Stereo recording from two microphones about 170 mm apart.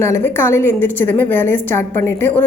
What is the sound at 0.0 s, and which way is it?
A woman's voice, 15° left (ahead or behind).